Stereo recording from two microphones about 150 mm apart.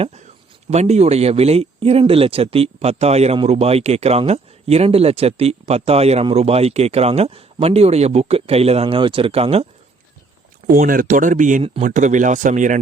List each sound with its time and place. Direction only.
0.7 s speech: 45° right (ahead or behind)
10.7 s speech: 70° right (ahead or behind)